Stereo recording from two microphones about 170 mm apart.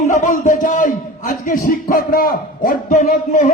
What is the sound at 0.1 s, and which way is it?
A man's voice, 45° left (ahead or behind).